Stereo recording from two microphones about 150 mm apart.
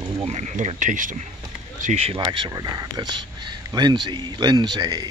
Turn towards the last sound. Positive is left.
turn(degrees=-30)  # may be behind; listen again after turning